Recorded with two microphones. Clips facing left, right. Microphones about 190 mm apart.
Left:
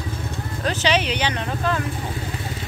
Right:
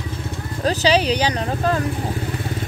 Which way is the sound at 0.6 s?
35° right (ahead or behind).